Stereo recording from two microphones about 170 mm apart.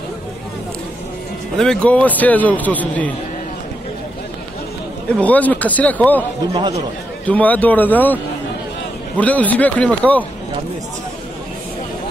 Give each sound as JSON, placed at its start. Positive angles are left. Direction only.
{"t": 1.6, "sound": "a man's voice", "side_deg": 5}
{"t": 5.1, "sound": "a man's voice", "side_deg": 10}
{"t": 6.5, "sound": "a man's voice", "side_deg": -25}
{"t": 7.2, "sound": "a man's voice", "side_deg": 10}
{"t": 9.2, "sound": "a man's voice", "side_deg": 10}